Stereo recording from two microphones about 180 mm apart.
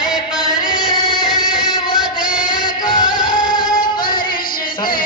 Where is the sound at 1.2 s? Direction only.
Centre (ahead or behind).